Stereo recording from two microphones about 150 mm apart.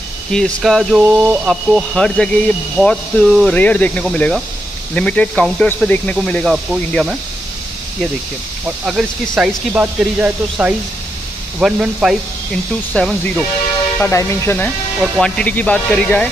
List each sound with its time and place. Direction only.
0.3 s speech: 5° left (ahead or behind)
8.6 s speech: 5° right (ahead or behind)
12.9 s speech: 10° left (ahead or behind)
15.0 s speech: 5° left (ahead or behind)